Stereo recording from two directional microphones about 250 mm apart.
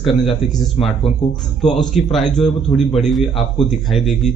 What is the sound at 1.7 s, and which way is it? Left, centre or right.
A man's voice, centre.